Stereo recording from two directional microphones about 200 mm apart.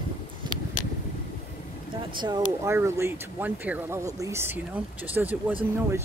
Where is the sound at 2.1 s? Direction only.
15° right (ahead or behind).